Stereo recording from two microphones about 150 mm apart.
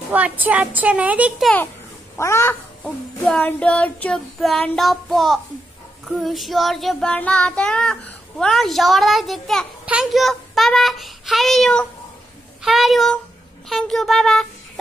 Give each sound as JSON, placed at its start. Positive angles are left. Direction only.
{"t": 0.1, "sound": "speech", "side_deg": -10}
{"t": 2.1, "sound": "crow", "side_deg": 20}
{"t": 3.3, "sound": "child singing", "side_deg": 10}
{"t": 9.8, "sound": "a child's voice", "side_deg": -5}
{"t": 12.6, "sound": "child singing", "side_deg": 0}